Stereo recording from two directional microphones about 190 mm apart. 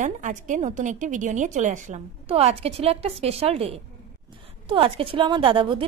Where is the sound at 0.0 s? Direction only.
40° right (ahead or behind).